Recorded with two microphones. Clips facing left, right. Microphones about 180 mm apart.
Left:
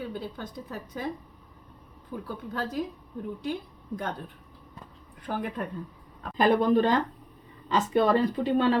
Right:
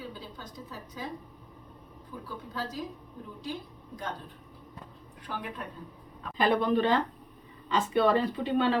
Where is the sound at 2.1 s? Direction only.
60° left (ahead or behind).